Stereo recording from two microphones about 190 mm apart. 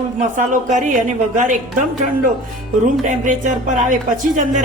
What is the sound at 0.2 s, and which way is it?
A woman's voice, 40° right (ahead or behind).